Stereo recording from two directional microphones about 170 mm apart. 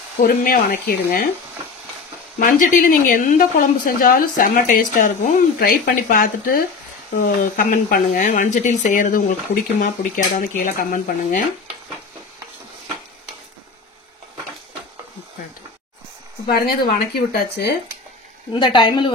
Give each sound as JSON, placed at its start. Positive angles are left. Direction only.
{"t": 0.2, "sound": "a woman's voice", "side_deg": 55}
{"t": 2.3, "sound": "a woman's voice", "side_deg": 50}
{"t": 16.4, "sound": "speech", "side_deg": 60}
{"t": 18.5, "sound": "a woman's voice", "side_deg": 25}